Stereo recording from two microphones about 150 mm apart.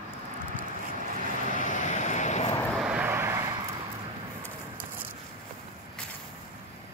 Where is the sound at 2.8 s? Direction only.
10° right (ahead or behind).